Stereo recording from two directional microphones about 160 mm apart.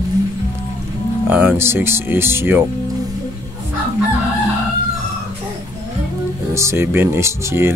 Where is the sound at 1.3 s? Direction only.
15° right (ahead or behind).